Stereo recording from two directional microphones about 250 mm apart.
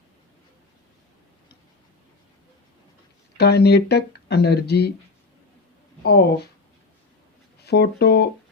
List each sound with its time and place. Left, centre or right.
3.3 s speech: left
6.0 s speech: left
7.6 s speech: left